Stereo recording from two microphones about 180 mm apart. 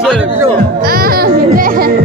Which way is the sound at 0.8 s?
55° right (ahead or behind).